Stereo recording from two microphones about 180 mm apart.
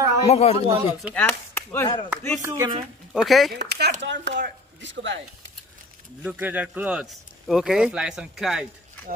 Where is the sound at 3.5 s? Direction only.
65° right (ahead or behind).